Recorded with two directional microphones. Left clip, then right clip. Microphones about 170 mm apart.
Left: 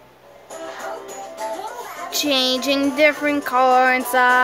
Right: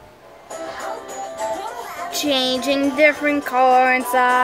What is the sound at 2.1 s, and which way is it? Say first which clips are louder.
Speech: left 1 dB; 15° left (ahead or behind).